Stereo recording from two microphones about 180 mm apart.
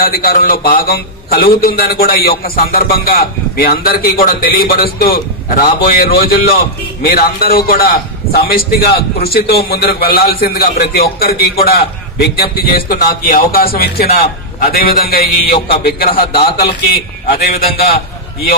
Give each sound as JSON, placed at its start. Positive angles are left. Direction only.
{"t": 0.0, "sound": "a man's voice", "side_deg": 55}